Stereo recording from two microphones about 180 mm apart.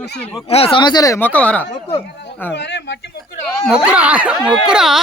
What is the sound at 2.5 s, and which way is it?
Speech, 75° left (ahead or behind).